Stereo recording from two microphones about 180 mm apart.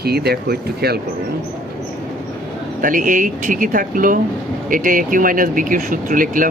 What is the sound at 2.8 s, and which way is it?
Speech, 50° right (ahead or behind).